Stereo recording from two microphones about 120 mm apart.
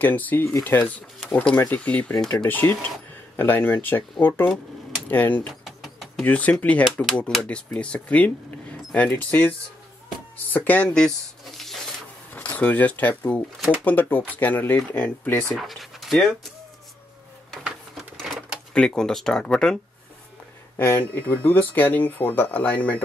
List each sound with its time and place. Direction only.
0.0 s speech: 15° left (ahead or behind)
0.8 s speech: 10° left (ahead or behind)
5.5 s bird: centre (ahead or behind)
6.2 s speech: 10° left (ahead or behind)
12.4 s speech: 15° left (ahead or behind)
15.4 s speech: centre (ahead or behind)
17.6 s printer: centre (ahead or behind)
18.7 s speech: 5° left (ahead or behind)
20.7 s speech: 20° left (ahead or behind)